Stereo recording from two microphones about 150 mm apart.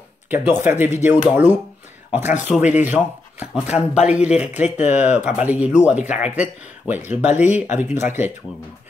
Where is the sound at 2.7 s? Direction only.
10° right (ahead or behind).